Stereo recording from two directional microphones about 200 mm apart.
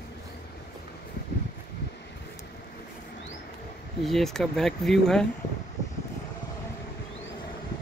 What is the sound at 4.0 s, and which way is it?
Speech, centre (ahead or behind).